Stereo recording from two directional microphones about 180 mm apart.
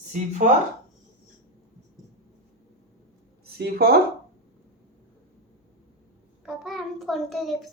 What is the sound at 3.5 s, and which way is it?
Speech, 60° right (ahead or behind).